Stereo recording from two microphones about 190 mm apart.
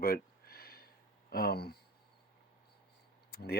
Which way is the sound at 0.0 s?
55° left (ahead or behind).